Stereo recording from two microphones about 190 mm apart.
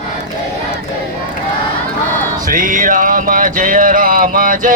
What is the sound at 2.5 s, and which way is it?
Music, 45° right (ahead or behind).